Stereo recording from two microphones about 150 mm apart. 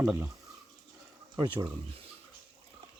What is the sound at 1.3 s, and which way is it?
Speech, 30° right (ahead or behind).